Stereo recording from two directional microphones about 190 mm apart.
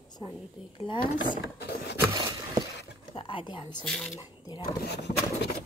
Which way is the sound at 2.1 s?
20° right (ahead or behind).